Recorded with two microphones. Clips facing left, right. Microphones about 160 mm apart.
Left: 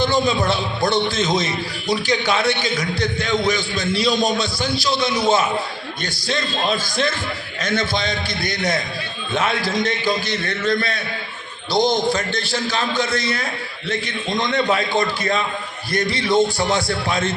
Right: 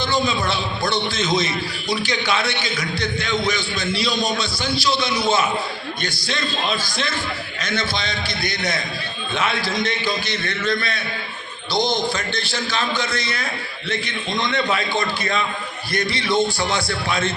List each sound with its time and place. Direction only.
0.0 s a man's voice: 45° left (ahead or behind)
12.1 s a man's voice: 40° left (ahead or behind)